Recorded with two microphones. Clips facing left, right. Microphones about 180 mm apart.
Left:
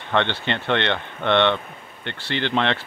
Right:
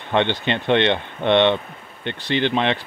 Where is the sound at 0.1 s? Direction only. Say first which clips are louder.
Right 3 dB; 15° right (ahead or behind).